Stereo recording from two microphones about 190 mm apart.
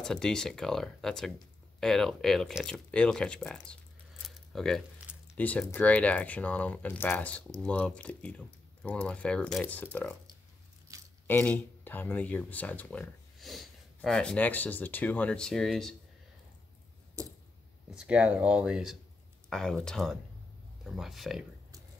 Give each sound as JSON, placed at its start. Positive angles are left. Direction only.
{"t": 0.0, "sound": "speech", "side_deg": 5}
{"t": 4.2, "sound": "keys jangling", "side_deg": 0}
{"t": 5.3, "sound": "speech", "side_deg": 10}
{"t": 10.9, "sound": "a sound", "side_deg": -15}
{"t": 11.2, "sound": "speech", "side_deg": 10}
{"t": 17.2, "sound": "a sound", "side_deg": -15}
{"t": 17.9, "sound": "speech", "side_deg": -5}